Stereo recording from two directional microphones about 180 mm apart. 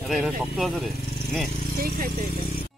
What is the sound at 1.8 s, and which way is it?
Speech, 55° right (ahead or behind).